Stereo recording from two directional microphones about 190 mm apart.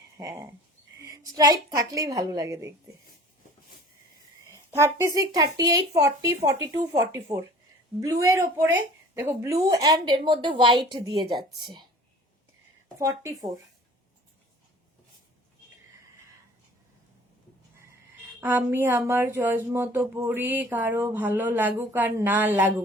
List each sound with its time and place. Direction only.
0.2 s speech: 15° right (ahead or behind)
4.5 s speech: 15° right (ahead or behind)
13.0 s speech: 15° right (ahead or behind)
18.3 s speech: 10° right (ahead or behind)